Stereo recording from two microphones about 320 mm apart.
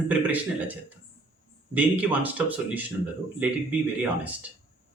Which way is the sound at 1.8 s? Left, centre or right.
Centre.